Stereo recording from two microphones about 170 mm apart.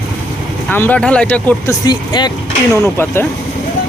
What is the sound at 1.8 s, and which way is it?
Speech, 25° left (ahead or behind).